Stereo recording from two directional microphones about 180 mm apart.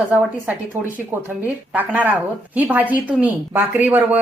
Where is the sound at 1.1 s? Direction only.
10° right (ahead or behind).